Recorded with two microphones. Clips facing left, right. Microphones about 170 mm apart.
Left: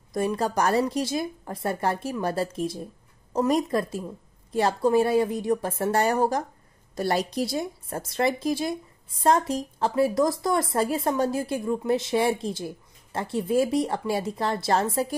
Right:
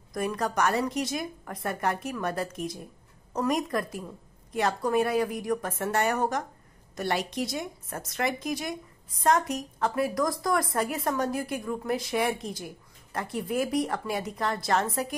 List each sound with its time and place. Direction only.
0.1 s a woman's voice: 25° left (ahead or behind)